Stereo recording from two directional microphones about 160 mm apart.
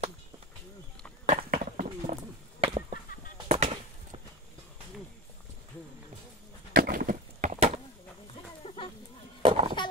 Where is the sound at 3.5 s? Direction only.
40° right (ahead or behind).